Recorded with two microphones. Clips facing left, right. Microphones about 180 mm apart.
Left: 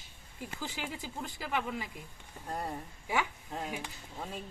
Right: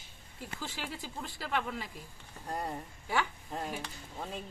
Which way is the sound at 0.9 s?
15° left (ahead or behind).